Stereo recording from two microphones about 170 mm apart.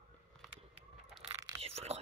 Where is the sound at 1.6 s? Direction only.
35° right (ahead or behind).